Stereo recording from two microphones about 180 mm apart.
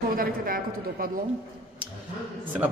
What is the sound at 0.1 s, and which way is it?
A woman's voice, 55° right (ahead or behind).